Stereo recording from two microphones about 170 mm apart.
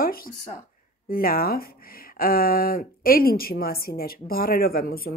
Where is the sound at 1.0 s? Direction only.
60° left (ahead or behind).